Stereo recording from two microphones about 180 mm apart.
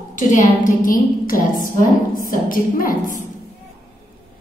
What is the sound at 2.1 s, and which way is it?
Speech, 50° left (ahead or behind).